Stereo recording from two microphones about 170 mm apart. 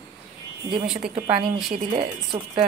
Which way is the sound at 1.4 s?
Centre (ahead or behind).